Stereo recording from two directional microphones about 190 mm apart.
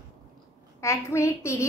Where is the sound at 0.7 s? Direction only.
15° left (ahead or behind).